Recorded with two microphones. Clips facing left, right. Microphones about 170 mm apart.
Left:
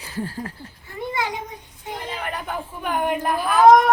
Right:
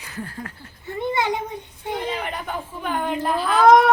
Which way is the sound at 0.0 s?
30° left (ahead or behind).